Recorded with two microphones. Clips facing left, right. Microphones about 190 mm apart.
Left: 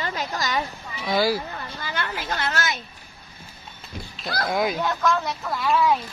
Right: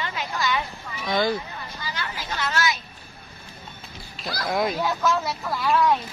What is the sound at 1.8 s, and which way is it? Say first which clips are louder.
Chatter: left 3 dB; 55° left (ahead or behind).